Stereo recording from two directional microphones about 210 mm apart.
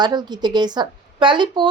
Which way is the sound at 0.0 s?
20° right (ahead or behind).